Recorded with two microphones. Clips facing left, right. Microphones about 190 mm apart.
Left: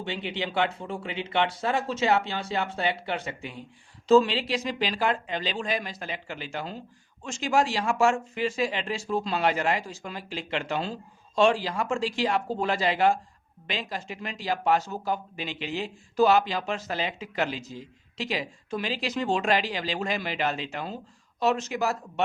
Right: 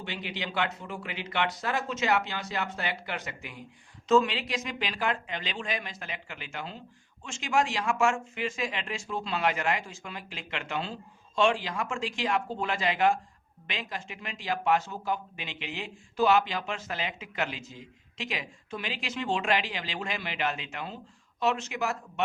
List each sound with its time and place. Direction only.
0.0 s speech: 30° left (ahead or behind)